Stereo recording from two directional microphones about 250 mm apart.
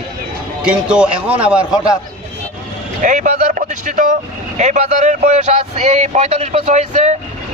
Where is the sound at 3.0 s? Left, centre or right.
Right.